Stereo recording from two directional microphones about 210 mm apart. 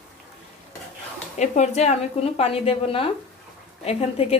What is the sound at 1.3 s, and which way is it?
A woman's voice, 35° left (ahead or behind).